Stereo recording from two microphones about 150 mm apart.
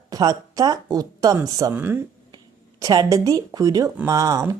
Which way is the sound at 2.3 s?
25° right (ahead or behind).